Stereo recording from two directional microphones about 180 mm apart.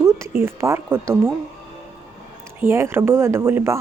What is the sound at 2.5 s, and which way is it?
Speech, 15° right (ahead or behind).